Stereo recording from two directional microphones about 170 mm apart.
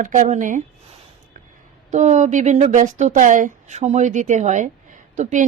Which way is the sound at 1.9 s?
45° right (ahead or behind).